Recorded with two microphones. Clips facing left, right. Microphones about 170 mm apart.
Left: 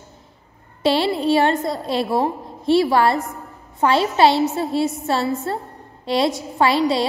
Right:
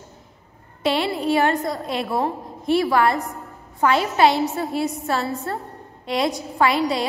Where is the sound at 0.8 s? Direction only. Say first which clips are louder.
Left 3 dB; 30° left (ahead or behind).